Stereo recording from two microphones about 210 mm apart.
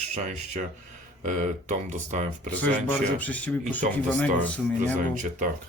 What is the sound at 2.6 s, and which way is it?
Speech, 5° left (ahead or behind).